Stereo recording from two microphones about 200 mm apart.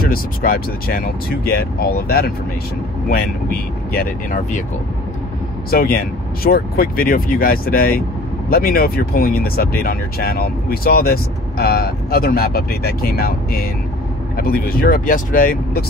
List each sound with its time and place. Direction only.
0.0 s speech: 45° left (ahead or behind)
5.7 s speech: 45° left (ahead or behind)